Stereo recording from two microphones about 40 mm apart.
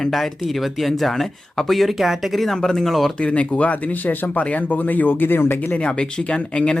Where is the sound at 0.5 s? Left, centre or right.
Centre.